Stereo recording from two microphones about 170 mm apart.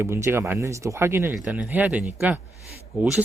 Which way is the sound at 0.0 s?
15° right (ahead or behind).